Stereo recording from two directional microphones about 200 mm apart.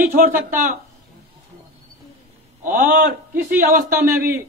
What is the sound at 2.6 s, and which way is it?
A man's voice, 40° right (ahead or behind).